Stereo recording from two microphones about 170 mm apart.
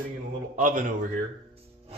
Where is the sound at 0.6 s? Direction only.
50° right (ahead or behind).